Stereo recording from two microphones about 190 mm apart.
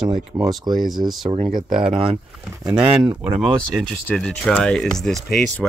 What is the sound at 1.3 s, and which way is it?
Speech, 30° right (ahead or behind).